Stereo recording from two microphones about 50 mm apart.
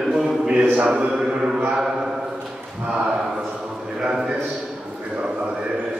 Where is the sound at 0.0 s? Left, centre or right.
Centre.